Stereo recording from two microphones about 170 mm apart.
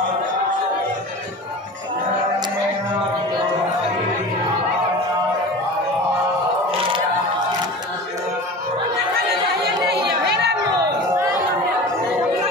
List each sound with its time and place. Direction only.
9.8 s chatter: 75° right (ahead or behind)